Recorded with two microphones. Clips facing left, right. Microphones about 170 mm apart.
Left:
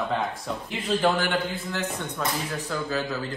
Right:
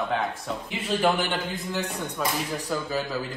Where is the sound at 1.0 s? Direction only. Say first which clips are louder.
Even; 15° right (ahead or behind).